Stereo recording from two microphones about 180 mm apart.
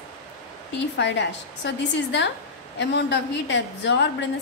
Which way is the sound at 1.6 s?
75° left (ahead or behind).